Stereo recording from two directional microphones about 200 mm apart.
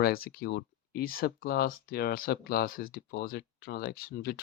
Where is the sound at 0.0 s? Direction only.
50° left (ahead or behind).